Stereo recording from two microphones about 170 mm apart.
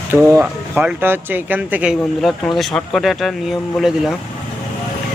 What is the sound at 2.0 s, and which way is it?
Speech, 5° left (ahead or behind).